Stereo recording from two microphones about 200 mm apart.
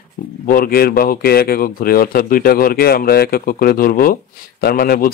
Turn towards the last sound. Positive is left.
turn(degrees=45)  # may be behind; listen again after turning